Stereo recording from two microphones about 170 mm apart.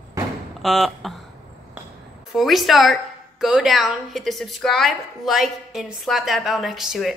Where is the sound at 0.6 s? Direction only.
Centre (ahead or behind).